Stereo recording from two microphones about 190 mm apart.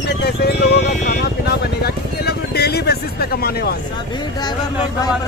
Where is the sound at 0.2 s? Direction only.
60° left (ahead or behind).